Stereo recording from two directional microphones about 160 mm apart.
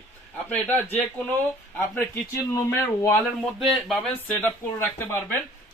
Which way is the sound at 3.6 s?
Centre (ahead or behind).